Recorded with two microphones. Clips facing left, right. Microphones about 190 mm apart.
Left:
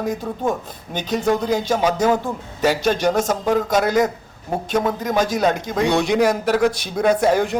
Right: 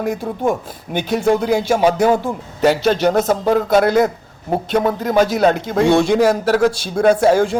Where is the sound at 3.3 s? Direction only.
10° right (ahead or behind).